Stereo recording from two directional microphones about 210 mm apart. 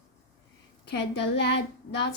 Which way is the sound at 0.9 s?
55° left (ahead or behind).